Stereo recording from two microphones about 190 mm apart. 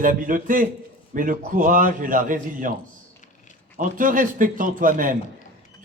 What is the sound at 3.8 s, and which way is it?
A man's voice, 45° right (ahead or behind).